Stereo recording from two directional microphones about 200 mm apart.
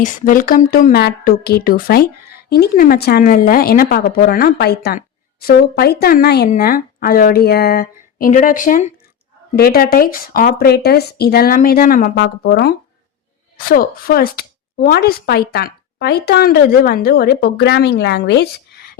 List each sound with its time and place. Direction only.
0.0 s a woman's voice: 45° left (ahead or behind)
12.1 s a woman's voice: 60° left (ahead or behind)